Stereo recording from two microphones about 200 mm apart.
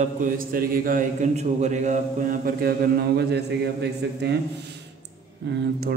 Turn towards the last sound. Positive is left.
turn(degrees=-50)  # may be behind; listen again after turning